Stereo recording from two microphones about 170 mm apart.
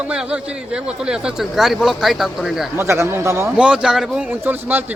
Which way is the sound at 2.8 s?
15° right (ahead or behind).